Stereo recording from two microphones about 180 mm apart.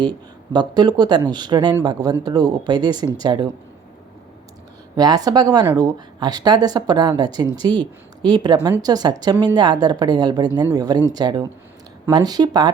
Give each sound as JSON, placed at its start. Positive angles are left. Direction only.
{"t": 0.5, "sound": "speech", "side_deg": -25}
{"t": 4.9, "sound": "speech", "side_deg": -20}